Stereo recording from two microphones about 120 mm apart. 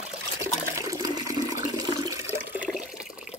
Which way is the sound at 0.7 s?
25° right (ahead or behind).